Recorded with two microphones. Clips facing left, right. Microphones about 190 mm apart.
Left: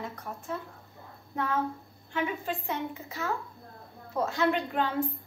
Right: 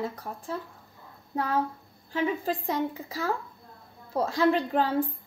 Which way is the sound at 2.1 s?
35° right (ahead or behind).